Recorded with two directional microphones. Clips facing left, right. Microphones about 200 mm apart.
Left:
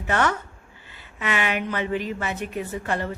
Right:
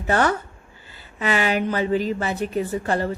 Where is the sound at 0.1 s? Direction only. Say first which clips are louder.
Right 3 dB; 35° right (ahead or behind).